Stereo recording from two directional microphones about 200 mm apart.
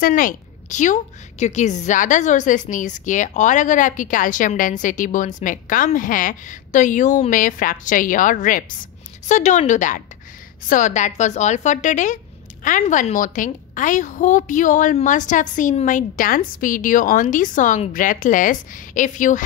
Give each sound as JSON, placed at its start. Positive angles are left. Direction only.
{"t": 0.0, "sound": "a woman's voice", "side_deg": 45}